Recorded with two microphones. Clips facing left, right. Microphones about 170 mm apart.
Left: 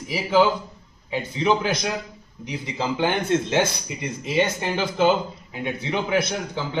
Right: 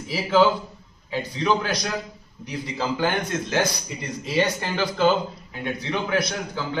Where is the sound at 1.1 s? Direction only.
20° left (ahead or behind).